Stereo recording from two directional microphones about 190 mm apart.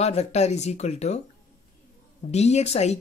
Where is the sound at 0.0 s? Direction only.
35° left (ahead or behind).